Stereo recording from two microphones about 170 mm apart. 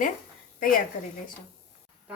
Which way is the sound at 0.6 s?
55° left (ahead or behind).